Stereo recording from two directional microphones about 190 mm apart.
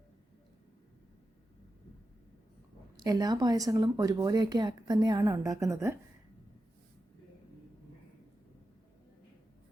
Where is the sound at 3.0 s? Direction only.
20° right (ahead or behind).